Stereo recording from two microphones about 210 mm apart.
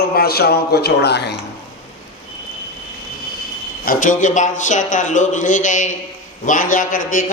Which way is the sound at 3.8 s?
40° left (ahead or behind).